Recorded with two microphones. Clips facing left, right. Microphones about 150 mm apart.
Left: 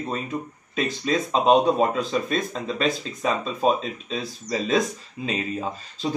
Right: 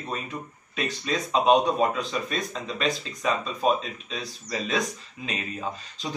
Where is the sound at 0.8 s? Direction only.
35° left (ahead or behind).